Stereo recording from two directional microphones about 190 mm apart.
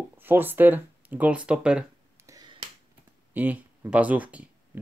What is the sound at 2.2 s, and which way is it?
Finger snapping, 20° right (ahead or behind).